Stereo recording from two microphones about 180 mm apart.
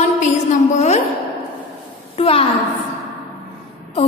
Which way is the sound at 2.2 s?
30° left (ahead or behind).